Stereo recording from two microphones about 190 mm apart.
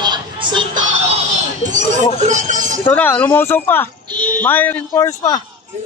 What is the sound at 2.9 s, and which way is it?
Speech, 5° left (ahead or behind).